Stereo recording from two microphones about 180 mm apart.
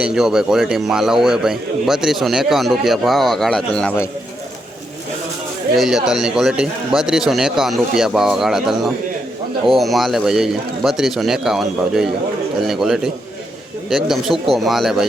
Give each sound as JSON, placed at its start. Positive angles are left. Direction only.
{"t": 0.0, "sound": "a man's voice", "side_deg": -5}
{"t": 5.7, "sound": "a man's voice", "side_deg": 0}